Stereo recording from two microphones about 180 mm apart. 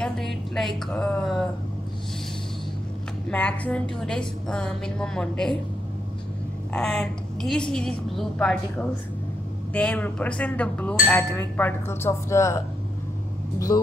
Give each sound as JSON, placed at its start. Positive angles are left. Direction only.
{"t": 0.0, "sound": "a woman's voice", "side_deg": 0}
{"t": 3.3, "sound": "a woman's voice", "side_deg": 5}
{"t": 6.7, "sound": "a woman's voice", "side_deg": 5}
{"t": 13.7, "sound": "speech", "side_deg": 25}